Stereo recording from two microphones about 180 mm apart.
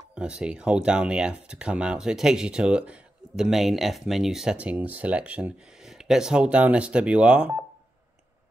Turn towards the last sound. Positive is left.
turn(degrees=-5)  # may be behind; listen again after turning